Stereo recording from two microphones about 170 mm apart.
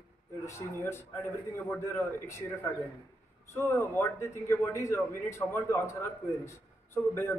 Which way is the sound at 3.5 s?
15° left (ahead or behind).